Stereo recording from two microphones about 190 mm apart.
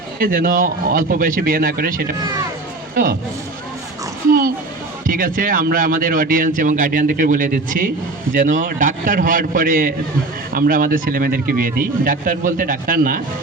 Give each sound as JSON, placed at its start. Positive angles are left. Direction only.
{"t": 0.2, "sound": "speech", "side_deg": -50}
{"t": 4.3, "sound": "a sound", "side_deg": -50}
{"t": 5.0, "sound": "speech", "side_deg": -45}